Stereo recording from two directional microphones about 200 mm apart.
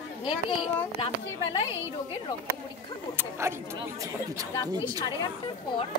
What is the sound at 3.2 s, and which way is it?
Speech, 10° right (ahead or behind).